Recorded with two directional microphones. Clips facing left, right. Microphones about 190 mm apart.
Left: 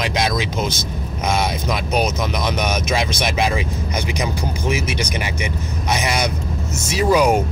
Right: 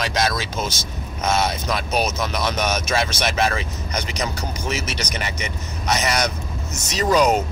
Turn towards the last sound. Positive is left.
turn(degrees=10)  # may be behind; listen again after turning